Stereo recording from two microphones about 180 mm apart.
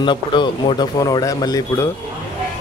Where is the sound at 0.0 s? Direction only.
25° left (ahead or behind).